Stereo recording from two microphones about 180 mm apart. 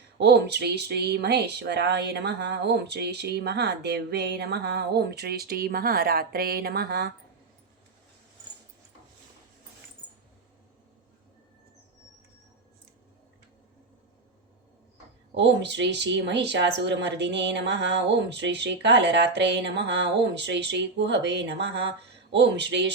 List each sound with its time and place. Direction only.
0.2 s speech: 70° right (ahead or behind)
15.4 s speech: 75° right (ahead or behind)